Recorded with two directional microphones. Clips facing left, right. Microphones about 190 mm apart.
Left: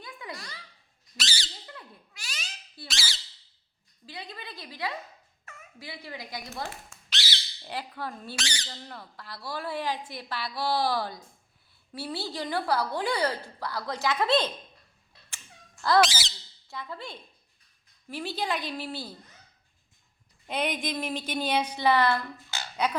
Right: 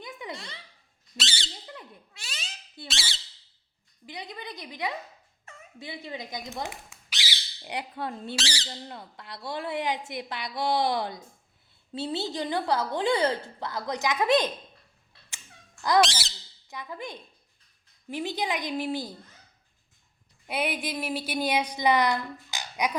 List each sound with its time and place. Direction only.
0.0 s a sound: 20° right (ahead or behind)
1.1 s squeak: 25° right (ahead or behind)
4.0 s a woman's voice: 20° right (ahead or behind)
16.0 s speech: 5° left (ahead or behind)
16.6 s a woman's voice: 15° right (ahead or behind)
20.5 s a woman's voice: 10° right (ahead or behind)